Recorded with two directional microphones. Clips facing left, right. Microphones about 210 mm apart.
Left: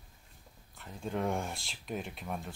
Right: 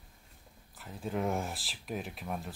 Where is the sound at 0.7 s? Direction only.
5° right (ahead or behind).